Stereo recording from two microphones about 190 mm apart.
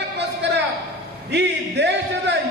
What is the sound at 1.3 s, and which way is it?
Speech, 65° right (ahead or behind).